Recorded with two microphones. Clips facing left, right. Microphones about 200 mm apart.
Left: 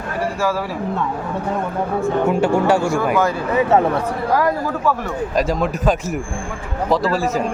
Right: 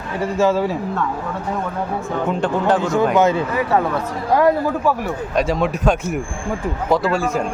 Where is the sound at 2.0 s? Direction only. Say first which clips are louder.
Left 5 dB; 10° left (ahead or behind).